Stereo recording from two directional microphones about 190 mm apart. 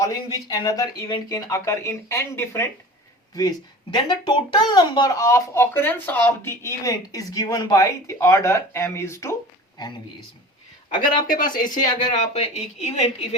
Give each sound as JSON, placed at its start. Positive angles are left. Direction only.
{"t": 0.0, "sound": "speech", "side_deg": 20}
{"t": 3.9, "sound": "speech", "side_deg": 25}
{"t": 11.3, "sound": "speech", "side_deg": 45}